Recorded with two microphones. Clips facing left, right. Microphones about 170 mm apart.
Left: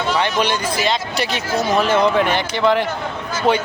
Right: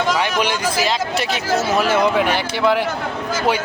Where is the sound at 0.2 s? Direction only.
10° right (ahead or behind).